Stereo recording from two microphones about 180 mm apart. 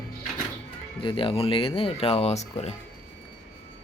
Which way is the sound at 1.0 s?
30° left (ahead or behind).